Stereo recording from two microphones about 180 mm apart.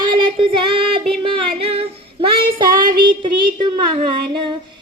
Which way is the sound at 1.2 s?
30° right (ahead or behind).